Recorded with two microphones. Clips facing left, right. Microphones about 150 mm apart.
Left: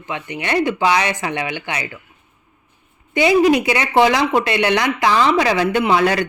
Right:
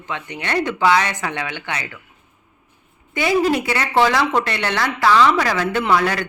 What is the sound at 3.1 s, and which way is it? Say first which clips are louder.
Speech: left 4 dB; 20° left (ahead or behind).